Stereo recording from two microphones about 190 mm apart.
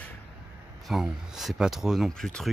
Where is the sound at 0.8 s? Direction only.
Centre (ahead or behind).